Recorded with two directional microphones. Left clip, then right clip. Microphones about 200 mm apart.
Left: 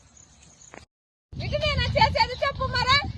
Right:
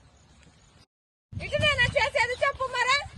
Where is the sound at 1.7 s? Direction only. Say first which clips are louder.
Left 2 dB; 50° right (ahead or behind).